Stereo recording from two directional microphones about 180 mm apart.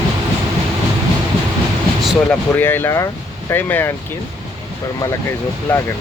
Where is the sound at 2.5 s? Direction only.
10° left (ahead or behind).